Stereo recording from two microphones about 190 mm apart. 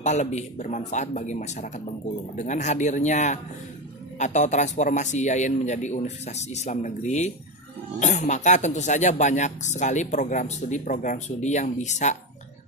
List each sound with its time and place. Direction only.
0.0 s speech: 40° left (ahead or behind)